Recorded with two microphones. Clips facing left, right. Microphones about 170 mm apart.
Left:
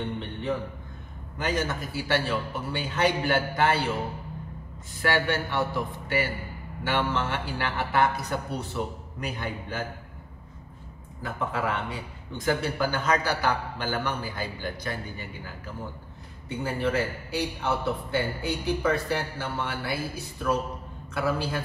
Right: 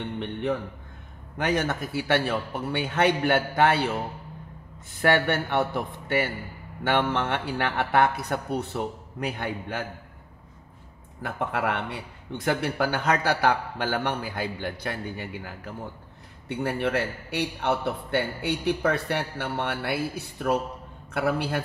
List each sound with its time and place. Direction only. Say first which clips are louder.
0.2 s music: right 3 dB; 60° right (ahead or behind)
1.4 s a man's voice: right 3 dB; 65° right (ahead or behind)
5.0 s a man's voice: right 3 dB; 60° right (ahead or behind)
11.2 s a man's voice: right 2 dB; 65° right (ahead or behind)